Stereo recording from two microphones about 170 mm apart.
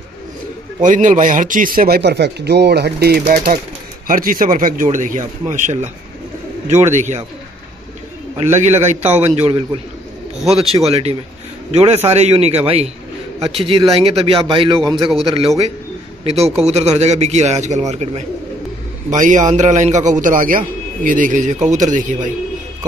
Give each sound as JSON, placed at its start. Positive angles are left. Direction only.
{"t": 0.8, "sound": "a man's voice", "side_deg": -50}
{"t": 8.4, "sound": "a man's voice", "side_deg": -40}
{"t": 9.0, "sound": "a man's voice", "side_deg": -10}
{"t": 9.3, "sound": "a man's voice", "side_deg": -35}
{"t": 10.9, "sound": "a man's voice", "side_deg": -35}